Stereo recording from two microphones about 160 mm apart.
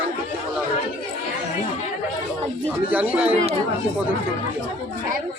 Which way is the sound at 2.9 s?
10° right (ahead or behind).